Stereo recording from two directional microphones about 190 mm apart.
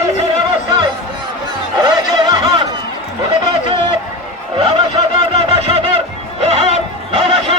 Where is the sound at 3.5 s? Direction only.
30° right (ahead or behind).